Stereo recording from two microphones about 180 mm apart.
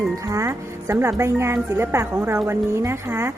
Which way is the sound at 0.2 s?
15° right (ahead or behind).